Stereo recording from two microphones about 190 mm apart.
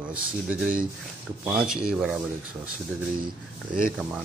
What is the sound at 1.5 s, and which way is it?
Speech, 5° right (ahead or behind).